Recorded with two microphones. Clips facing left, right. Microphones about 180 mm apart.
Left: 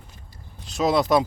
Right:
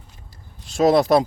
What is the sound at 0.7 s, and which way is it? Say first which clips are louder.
Speech: right 4 dB; 45° right (ahead or behind).